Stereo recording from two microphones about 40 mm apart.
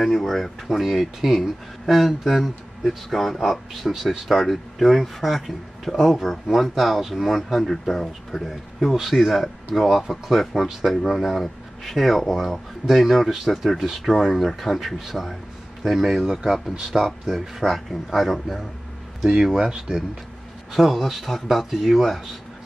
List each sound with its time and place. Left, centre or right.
0.0 s speech: centre
3.9 s speech: centre
16.9 s speech: centre
17.3 s speech: centre
19.6 s speech: right
20.7 s speech: centre